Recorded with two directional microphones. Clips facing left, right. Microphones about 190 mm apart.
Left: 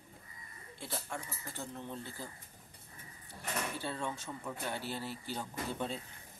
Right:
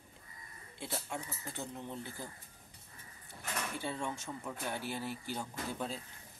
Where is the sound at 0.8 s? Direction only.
15° right (ahead or behind).